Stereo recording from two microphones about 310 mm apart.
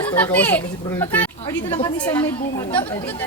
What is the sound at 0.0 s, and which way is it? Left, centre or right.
Speech, centre.